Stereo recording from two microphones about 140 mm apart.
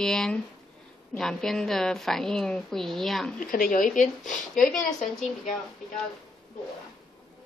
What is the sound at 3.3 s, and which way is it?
Speech, 80° left.